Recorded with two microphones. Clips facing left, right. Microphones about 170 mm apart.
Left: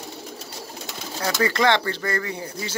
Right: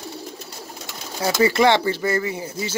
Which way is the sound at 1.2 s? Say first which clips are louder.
Right 4 dB; 10° right (ahead or behind).